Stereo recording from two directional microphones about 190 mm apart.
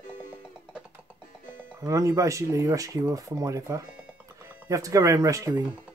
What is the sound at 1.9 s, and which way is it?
Speech, 15° right (ahead or behind).